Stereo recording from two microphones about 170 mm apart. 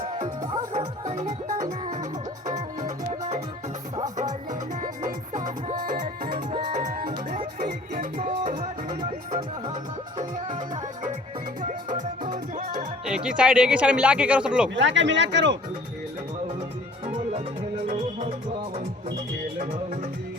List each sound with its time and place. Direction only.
0.7 s music: 45° right (ahead or behind)
3.1 s music: 40° right (ahead or behind)
4.8 s music: 45° right (ahead or behind)
6.5 s music: 30° right (ahead or behind)
6.7 s music: 50° right (ahead or behind)
11.6 s music: 50° right (ahead or behind)
13.1 s speech: 5° right (ahead or behind)
14.8 s speech: 90° right
17.1 s music: 45° right (ahead or behind)